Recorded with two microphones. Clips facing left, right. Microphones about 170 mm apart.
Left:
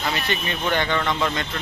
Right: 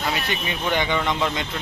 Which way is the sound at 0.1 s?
10° right (ahead or behind).